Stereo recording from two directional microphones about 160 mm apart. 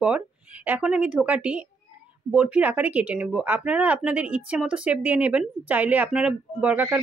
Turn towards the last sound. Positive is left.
turn(degrees=-10)  # may be behind; listen again after turning